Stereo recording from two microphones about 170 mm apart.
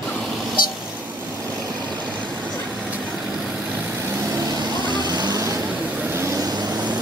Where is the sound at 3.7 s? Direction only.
15° right (ahead or behind).